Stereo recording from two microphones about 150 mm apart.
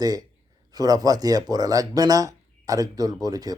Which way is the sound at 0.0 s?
25° right (ahead or behind).